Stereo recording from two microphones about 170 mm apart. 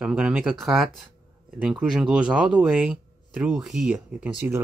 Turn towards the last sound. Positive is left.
turn(degrees=-10)  # may be behind; listen again after turning